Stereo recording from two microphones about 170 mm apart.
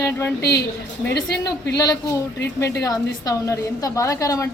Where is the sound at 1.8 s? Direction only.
20° left (ahead or behind).